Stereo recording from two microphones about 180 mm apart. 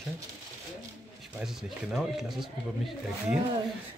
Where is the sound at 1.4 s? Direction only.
Centre (ahead or behind).